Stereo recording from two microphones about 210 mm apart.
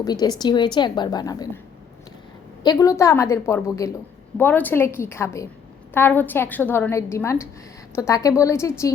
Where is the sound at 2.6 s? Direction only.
15° left (ahead or behind).